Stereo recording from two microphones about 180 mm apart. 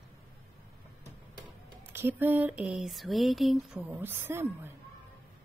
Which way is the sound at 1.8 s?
10° right (ahead or behind).